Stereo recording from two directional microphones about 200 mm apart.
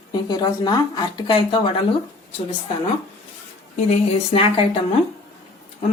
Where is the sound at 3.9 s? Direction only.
30° left (ahead or behind).